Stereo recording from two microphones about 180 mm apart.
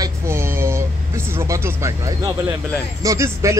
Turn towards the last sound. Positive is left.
turn(degrees=-15)  # may be behind; listen again after turning